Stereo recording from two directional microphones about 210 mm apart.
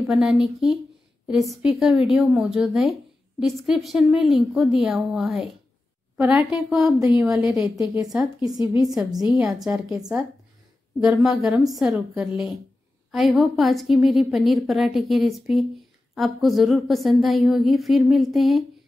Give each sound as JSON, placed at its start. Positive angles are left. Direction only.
{"t": 0.0, "sound": "a woman's voice", "side_deg": 0}
{"t": 8.5, "sound": "a woman's voice", "side_deg": -15}
{"t": 9.2, "sound": "a woman's voice", "side_deg": -5}
{"t": 11.0, "sound": "a woman's voice", "side_deg": 0}